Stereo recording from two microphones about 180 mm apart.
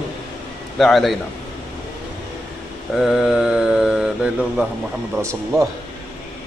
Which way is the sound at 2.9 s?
Centre (ahead or behind).